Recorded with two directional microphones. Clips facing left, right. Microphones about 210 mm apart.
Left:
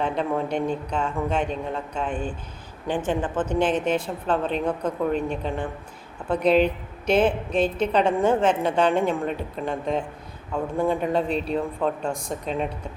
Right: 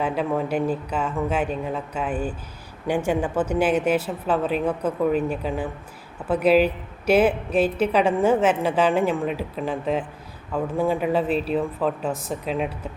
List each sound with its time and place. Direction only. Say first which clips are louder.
0.0 s a woman's voice: right 1 dB; 5° right (ahead or behind)